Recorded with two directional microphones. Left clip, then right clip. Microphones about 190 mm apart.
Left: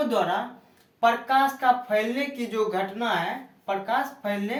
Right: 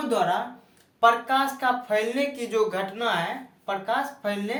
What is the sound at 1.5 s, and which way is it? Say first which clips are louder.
A woman's voice: left 2 dB; 35° right (ahead or behind).